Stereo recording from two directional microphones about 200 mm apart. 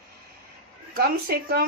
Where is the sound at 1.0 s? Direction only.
50° right (ahead or behind).